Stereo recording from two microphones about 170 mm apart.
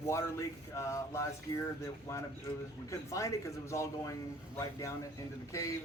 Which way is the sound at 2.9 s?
20° left (ahead or behind).